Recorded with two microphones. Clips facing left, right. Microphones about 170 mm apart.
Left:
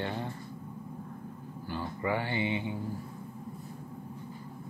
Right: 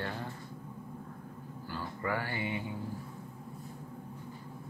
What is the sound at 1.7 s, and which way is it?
Speech, 20° left (ahead or behind).